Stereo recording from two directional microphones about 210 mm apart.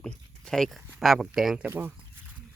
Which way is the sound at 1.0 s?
Centre (ahead or behind).